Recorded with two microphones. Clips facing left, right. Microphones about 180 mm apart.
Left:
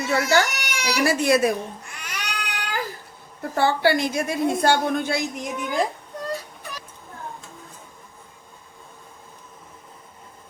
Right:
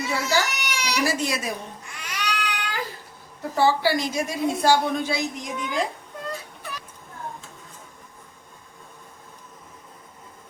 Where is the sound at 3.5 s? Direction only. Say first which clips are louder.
Left 1 dB; 60° left (ahead or behind).